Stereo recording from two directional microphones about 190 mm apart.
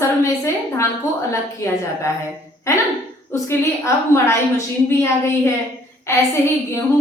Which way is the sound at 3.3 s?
15° left (ahead or behind).